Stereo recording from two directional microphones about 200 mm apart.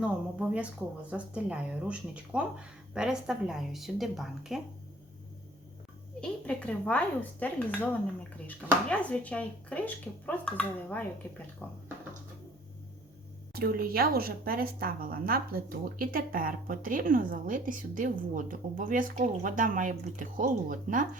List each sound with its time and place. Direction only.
0.0 s speech: 5° right (ahead or behind)
6.1 s speech: 5° left (ahead or behind)
13.5 s speech: 50° right (ahead or behind)